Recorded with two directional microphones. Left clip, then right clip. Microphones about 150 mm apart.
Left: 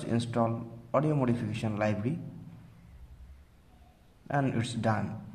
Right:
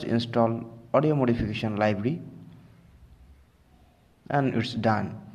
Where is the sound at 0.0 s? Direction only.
25° right (ahead or behind).